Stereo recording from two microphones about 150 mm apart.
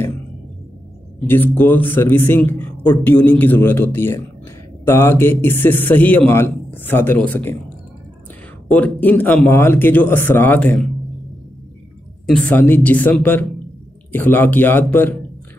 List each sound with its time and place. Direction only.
1.2 s a man's voice: 15° left (ahead or behind)
8.6 s a man's voice: 10° left (ahead or behind)
12.3 s a man's voice: 10° left (ahead or behind)